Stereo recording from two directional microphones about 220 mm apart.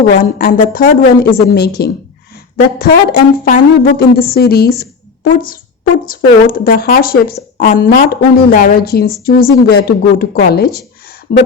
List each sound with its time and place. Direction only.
0.1 s speech: 40° left (ahead or behind)